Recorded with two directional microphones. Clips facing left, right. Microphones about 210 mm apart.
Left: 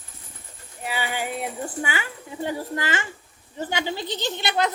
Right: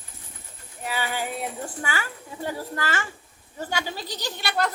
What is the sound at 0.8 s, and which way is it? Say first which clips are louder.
A child's voice: left 1 dB; 15° left (ahead or behind).